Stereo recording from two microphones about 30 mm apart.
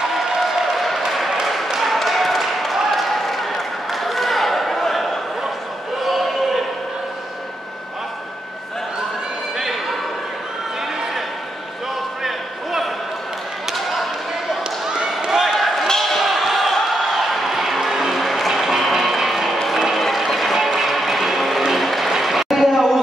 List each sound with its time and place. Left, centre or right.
0.1 s applause: centre
1.7 s basketball bounce: centre
12.2 s a sound: centre
13.7 s basketball bounce: centre
15.2 s basketball bounce: centre
15.5 s slam: centre
15.9 s basketball bounce: centre
16.2 s a sound: centre
18.5 s music: centre
20.0 s a sound: centre
20.5 s music: centre
21.7 s applause: centre
22.2 s a sound: centre